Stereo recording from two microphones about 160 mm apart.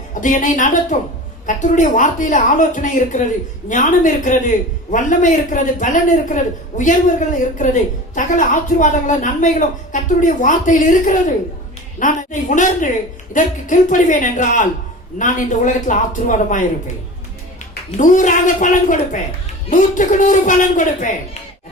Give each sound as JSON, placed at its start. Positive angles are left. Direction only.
{"t": 0.1, "sound": "a man's voice", "side_deg": 50}
{"t": 17.9, "sound": "a man's voice", "side_deg": 50}